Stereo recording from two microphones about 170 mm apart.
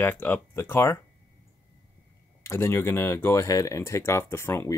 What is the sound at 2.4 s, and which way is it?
Speech, 15° left (ahead or behind).